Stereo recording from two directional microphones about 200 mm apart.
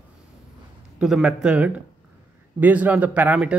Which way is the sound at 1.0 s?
Centre (ahead or behind).